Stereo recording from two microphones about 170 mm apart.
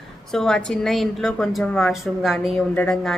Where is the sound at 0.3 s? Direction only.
5° left (ahead or behind).